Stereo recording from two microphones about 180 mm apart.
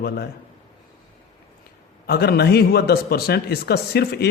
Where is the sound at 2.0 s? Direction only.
60° left (ahead or behind).